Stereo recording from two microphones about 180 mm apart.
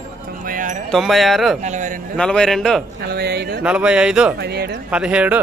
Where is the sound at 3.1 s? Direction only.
65° right (ahead or behind).